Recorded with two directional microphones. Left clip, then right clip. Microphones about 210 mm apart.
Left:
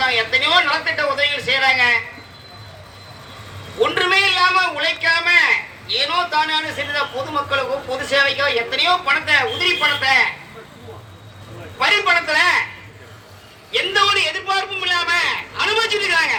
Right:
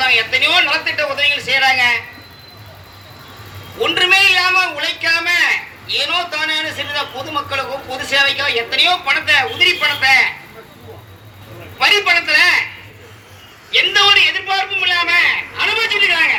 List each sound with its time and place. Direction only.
0.0 s a sound: 30° left (ahead or behind)
3.8 s a man's voice: 35° left (ahead or behind)
11.8 s a man's voice: 35° left (ahead or behind)
13.7 s a man's voice: 40° left (ahead or behind)